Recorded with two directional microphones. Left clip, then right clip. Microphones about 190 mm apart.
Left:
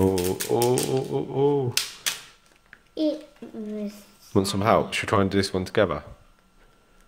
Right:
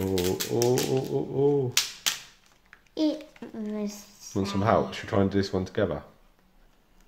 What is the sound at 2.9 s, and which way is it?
Speech, 50° right (ahead or behind).